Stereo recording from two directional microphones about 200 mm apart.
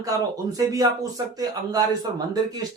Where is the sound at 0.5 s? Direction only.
15° right (ahead or behind).